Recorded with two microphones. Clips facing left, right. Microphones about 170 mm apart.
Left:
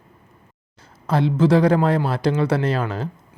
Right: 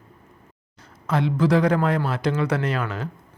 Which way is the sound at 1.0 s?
30° left (ahead or behind).